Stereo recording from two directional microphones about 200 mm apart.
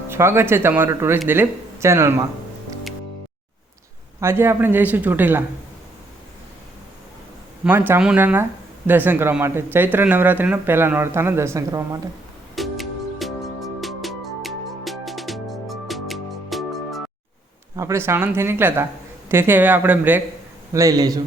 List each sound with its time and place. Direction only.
0.1 s speech: 10° right (ahead or behind)
4.2 s speech: 10° right (ahead or behind)
7.6 s speech: 10° right (ahead or behind)
12.5 s music: centre (ahead or behind)
17.7 s speech: 15° right (ahead or behind)